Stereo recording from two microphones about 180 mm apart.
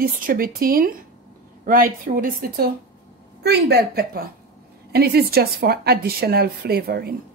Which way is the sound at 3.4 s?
65° right (ahead or behind).